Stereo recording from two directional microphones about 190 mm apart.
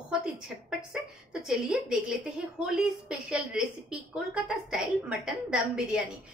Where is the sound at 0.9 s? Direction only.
5° right (ahead or behind).